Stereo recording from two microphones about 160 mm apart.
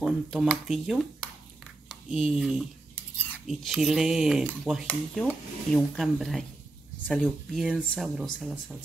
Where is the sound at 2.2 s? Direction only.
Centre (ahead or behind).